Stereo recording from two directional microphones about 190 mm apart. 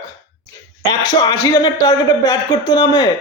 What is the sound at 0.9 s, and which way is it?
A man's voice, 15° left (ahead or behind).